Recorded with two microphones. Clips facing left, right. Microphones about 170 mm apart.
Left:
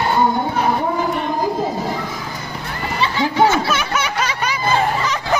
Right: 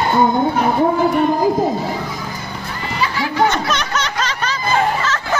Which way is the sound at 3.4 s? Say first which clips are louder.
Even; 5° left (ahead or behind).